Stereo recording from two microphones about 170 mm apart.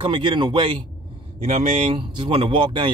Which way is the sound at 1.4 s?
40° right (ahead or behind).